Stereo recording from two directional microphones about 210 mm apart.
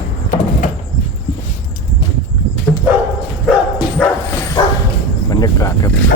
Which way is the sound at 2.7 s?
5° left (ahead or behind).